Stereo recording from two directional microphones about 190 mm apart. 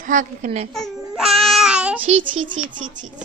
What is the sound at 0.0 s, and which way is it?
Speech, 45° right (ahead or behind).